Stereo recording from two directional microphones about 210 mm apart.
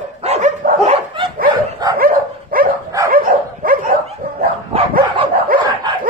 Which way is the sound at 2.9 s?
15° right (ahead or behind).